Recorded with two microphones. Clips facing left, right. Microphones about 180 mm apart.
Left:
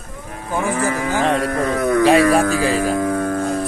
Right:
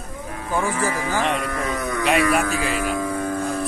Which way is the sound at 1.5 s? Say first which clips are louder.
Left 7 dB; 55° left (ahead or behind).